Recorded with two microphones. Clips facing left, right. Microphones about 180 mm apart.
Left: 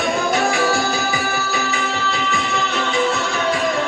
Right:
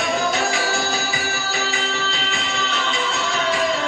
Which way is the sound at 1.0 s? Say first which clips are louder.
Left 4 dB; 55° left (ahead or behind).